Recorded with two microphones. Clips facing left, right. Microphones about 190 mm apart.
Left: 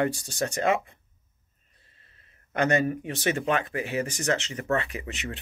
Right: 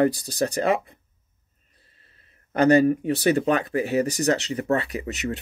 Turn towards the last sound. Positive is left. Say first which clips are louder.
# right 7 dB
turn(degrees=-40)  # may be behind; listen again after turning